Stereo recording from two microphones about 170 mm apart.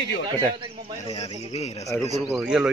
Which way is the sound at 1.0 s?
35° left (ahead or behind).